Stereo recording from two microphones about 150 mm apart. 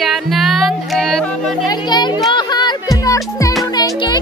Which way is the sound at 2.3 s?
30° left (ahead or behind).